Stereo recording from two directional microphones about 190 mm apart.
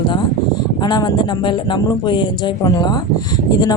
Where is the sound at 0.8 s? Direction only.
20° left (ahead or behind).